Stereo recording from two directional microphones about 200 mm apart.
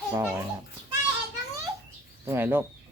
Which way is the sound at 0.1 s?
10° right (ahead or behind).